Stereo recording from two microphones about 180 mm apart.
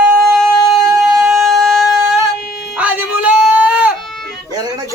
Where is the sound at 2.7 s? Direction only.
10° right (ahead or behind).